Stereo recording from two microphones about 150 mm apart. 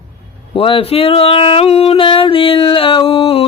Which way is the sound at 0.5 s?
40° left (ahead or behind).